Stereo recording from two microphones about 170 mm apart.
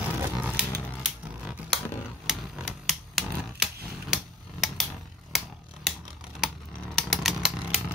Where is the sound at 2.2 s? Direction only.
Centre (ahead or behind).